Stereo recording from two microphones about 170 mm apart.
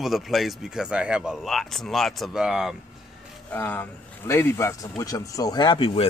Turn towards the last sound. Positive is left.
turn(degrees=30)  # may be behind; listen again after turning